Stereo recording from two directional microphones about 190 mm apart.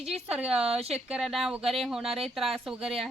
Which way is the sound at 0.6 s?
30° right (ahead or behind).